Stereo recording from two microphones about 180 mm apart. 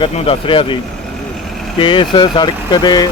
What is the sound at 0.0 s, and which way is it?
Speech, 30° left (ahead or behind).